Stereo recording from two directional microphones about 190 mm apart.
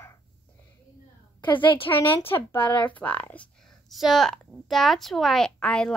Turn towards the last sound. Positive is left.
turn(degrees=5)  # may be behind; listen again after turning